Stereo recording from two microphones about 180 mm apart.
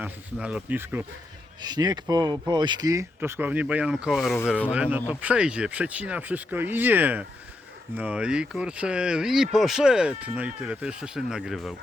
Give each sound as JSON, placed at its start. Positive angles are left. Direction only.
{"t": 0.0, "sound": "speech", "side_deg": -5}
{"t": 1.6, "sound": "speech", "side_deg": -25}